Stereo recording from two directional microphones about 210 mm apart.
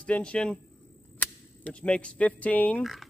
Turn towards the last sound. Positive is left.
turn(degrees=5)  # may be behind; listen again after turning